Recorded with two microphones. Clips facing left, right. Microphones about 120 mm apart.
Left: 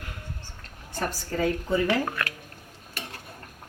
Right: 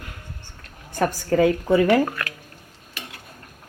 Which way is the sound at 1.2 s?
70° right (ahead or behind).